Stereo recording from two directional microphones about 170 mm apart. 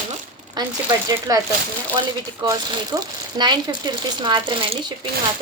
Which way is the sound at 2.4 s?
25° right (ahead or behind).